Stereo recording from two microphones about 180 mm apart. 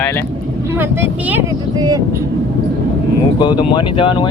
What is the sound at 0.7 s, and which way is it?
Speech, 10° right (ahead or behind).